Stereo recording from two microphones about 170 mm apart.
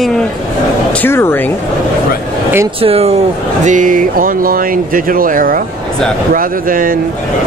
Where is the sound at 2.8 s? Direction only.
35° right (ahead or behind).